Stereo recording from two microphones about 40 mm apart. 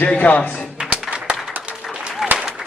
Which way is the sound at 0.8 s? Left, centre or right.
Right.